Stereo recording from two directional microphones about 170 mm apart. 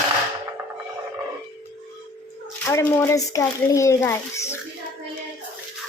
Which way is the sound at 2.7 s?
15° left (ahead or behind).